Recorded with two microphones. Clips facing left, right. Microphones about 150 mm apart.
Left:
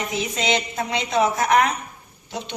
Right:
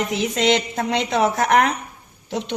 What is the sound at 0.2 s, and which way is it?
Speech, 70° right (ahead or behind).